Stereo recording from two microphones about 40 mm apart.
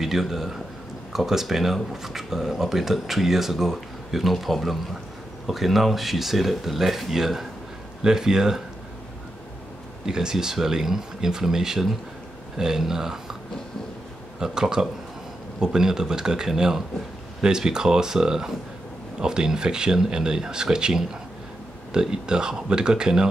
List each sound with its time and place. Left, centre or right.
0.0 s speech: centre
10.0 s speech: centre
14.4 s speech: centre